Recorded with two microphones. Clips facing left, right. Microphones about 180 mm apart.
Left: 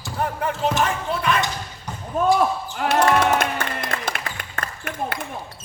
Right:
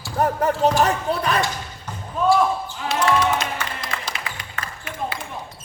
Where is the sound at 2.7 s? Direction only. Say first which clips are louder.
Left 4 dB; 60° left (ahead or behind).